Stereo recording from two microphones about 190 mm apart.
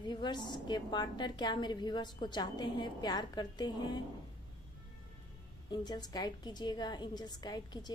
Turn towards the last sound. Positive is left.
turn(degrees=20)  # may be behind; listen again after turning